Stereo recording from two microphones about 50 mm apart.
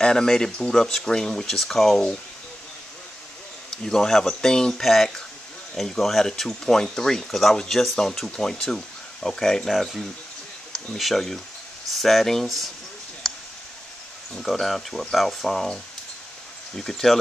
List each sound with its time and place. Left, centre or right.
0.0 s speech: centre
3.7 s speech: centre
9.7 s speech: centre
13.2 s clicking: centre
14.3 s speech: centre